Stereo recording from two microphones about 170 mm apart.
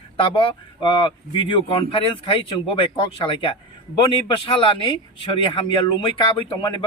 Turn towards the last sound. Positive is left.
turn(degrees=25)  # may be behind; listen again after turning